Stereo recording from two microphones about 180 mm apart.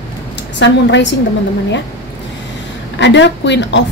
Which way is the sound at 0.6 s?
80° left.